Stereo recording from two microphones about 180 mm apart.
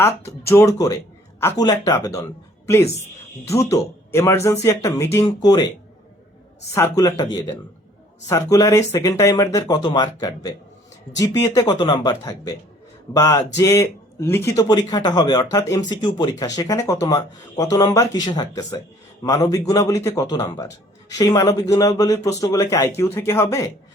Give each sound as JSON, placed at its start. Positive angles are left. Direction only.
{"t": 0.3, "sound": "speech", "side_deg": 15}
{"t": 3.5, "sound": "speech", "side_deg": 15}
{"t": 6.7, "sound": "speech", "side_deg": 15}
{"t": 8.3, "sound": "speech", "side_deg": 20}